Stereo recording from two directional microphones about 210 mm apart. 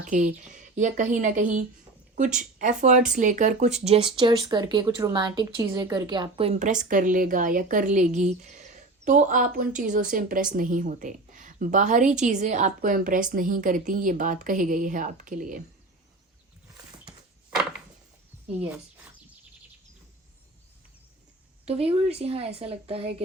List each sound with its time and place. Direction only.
0.0 s speech: 35° right (ahead or behind)
17.1 s a sound: 5° right (ahead or behind)
21.6 s speech: 30° right (ahead or behind)